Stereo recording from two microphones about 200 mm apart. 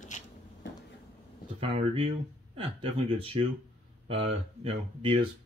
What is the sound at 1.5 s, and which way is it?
Speech, 30° right (ahead or behind).